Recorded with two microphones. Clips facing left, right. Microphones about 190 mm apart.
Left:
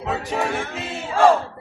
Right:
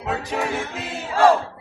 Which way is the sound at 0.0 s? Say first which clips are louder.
Left 1 dB; centre (ahead or behind).